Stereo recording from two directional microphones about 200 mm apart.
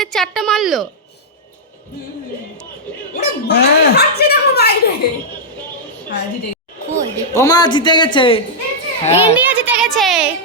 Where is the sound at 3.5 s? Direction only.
55° left (ahead or behind).